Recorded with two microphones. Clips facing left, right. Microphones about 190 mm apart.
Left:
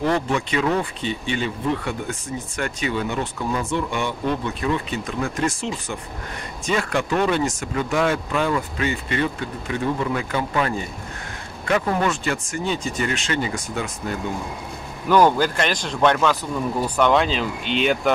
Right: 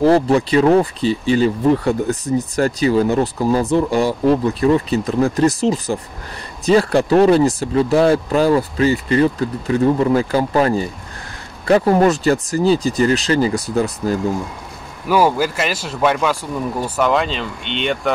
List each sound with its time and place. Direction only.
0.0 s speech: 35° right (ahead or behind)
15.0 s speech: 5° right (ahead or behind)